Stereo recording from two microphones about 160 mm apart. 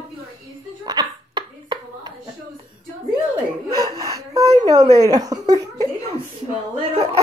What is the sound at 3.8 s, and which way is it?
Speech, 25° right (ahead or behind).